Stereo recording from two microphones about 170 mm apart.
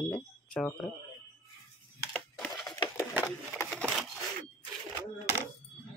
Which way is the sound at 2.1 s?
Centre (ahead or behind).